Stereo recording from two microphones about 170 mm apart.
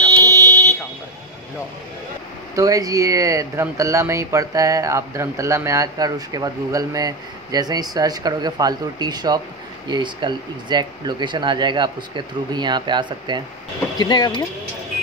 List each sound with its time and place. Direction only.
0.2 s buzzer: 20° right (ahead or behind)
2.5 s speech: 20° right (ahead or behind)
13.9 s speech: 25° left (ahead or behind)